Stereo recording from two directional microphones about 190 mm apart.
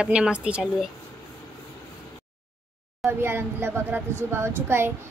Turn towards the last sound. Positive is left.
turn(degrees=-10)  # may be behind; listen again after turning